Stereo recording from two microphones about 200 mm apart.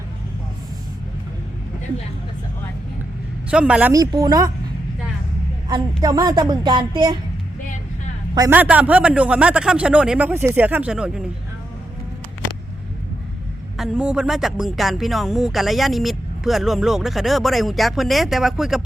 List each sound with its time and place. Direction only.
3.5 s speech: 5° right (ahead or behind)
3.9 s a woman's voice: 20° right (ahead or behind)
6.0 s a woman's voice: 20° right (ahead or behind)
8.4 s a man's voice: 10° right (ahead or behind)
13.7 s speech: centre (ahead or behind)